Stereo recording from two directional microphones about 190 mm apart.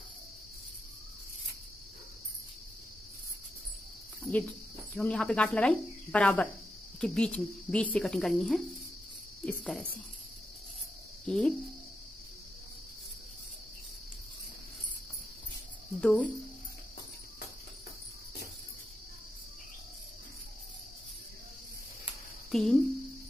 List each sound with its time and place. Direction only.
4.2 s speech: 5° left (ahead or behind)
11.2 s speech: 5° left (ahead or behind)
16.0 s cricket: 5° left (ahead or behind)
22.5 s speech: centre (ahead or behind)